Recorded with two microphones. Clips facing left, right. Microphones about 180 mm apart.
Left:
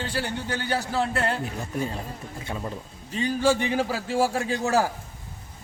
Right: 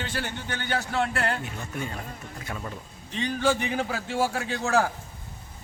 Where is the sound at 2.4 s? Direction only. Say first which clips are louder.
Left 3 dB; 25° left (ahead or behind).